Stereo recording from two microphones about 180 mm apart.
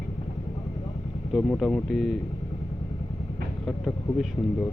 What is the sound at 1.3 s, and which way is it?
Speech, centre (ahead or behind).